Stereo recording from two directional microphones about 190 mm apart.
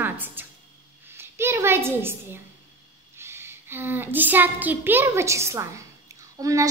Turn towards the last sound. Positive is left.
turn(degrees=-15)  # may be behind; listen again after turning